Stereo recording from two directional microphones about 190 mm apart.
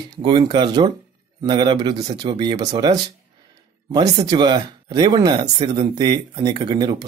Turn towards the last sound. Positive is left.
turn(degrees=-20)  # may be behind; listen again after turning